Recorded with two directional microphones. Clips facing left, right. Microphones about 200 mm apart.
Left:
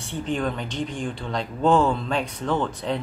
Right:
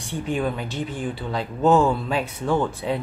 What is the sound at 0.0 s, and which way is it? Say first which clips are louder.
Speech: right 1 dB; 10° right (ahead or behind).